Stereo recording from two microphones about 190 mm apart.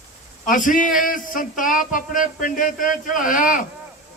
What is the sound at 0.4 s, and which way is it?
Speech, 45° left (ahead or behind).